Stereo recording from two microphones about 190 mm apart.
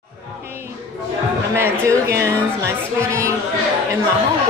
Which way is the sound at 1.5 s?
15° right (ahead or behind).